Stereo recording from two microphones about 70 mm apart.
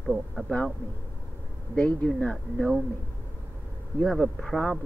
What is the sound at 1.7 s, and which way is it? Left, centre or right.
Speech, centre.